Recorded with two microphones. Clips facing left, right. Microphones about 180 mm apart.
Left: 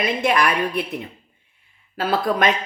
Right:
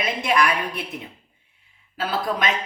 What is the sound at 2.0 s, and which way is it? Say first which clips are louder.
Speech: left 5 dB; 55° left (ahead or behind).